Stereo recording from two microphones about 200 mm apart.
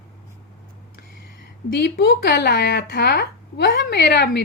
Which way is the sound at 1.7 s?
50° left (ahead or behind).